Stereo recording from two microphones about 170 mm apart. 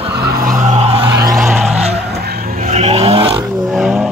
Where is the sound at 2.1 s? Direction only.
65° right (ahead or behind).